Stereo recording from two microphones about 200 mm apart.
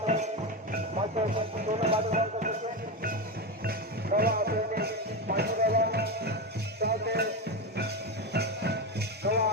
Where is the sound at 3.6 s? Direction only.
50° right (ahead or behind).